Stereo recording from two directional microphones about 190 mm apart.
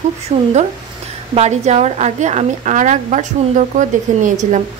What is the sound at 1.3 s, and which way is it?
A woman's voice, 35° right (ahead or behind).